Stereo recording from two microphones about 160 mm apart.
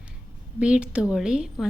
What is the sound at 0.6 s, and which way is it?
A woman's voice, 5° right (ahead or behind).